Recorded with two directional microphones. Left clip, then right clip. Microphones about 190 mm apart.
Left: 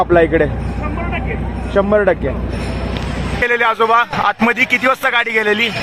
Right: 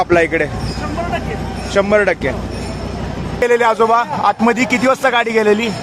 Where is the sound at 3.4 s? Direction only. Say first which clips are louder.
Right 1 dB; 15° right (ahead or behind).